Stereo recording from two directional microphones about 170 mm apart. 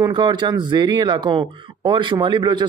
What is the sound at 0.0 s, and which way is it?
A man's voice, 25° right (ahead or behind).